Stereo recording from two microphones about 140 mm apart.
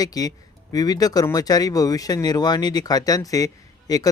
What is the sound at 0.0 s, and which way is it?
Speech, 25° left (ahead or behind).